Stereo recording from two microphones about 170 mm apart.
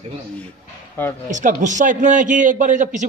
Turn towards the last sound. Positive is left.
turn(degrees=-50)  # may be behind; listen again after turning